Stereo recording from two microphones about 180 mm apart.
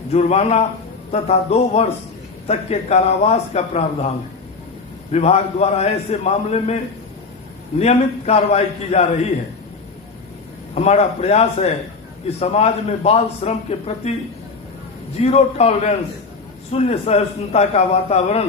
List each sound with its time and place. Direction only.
0.1 s a man's voice: 35° left (ahead or behind)
5.1 s a man's voice: 35° left (ahead or behind)
7.8 s a man's voice: 35° left (ahead or behind)
10.8 s a man's voice: 35° left (ahead or behind)
15.2 s a man's voice: 35° left (ahead or behind)